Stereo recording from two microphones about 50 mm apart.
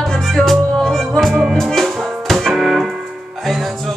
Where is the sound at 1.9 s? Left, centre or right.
Centre.